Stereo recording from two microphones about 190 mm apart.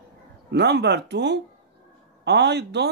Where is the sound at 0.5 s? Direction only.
65° right (ahead or behind).